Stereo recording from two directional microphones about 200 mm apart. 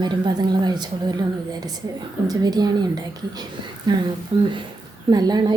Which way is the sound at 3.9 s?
20° right (ahead or behind).